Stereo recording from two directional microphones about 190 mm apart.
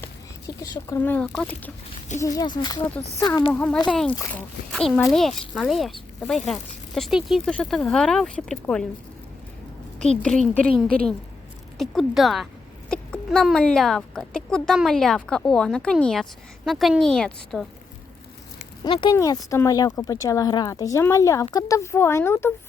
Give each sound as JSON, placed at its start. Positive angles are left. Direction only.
{"t": 0.0, "sound": "speech", "side_deg": 20}
{"t": 2.2, "sound": "speech", "side_deg": 20}
{"t": 3.5, "sound": "speech", "side_deg": 10}
{"t": 10.0, "sound": "speech", "side_deg": 5}
{"t": 11.8, "sound": "speech", "side_deg": 0}
{"t": 18.9, "sound": "speech", "side_deg": 25}